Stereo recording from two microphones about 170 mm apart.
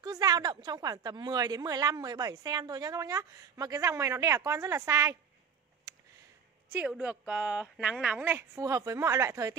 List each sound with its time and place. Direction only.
0.0 s a woman's voice: 25° right (ahead or behind)
6.7 s speech: 5° right (ahead or behind)